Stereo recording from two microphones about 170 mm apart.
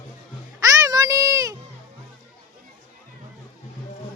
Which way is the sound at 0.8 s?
20° right (ahead or behind).